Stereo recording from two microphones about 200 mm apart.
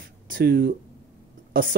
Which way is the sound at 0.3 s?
50° right (ahead or behind).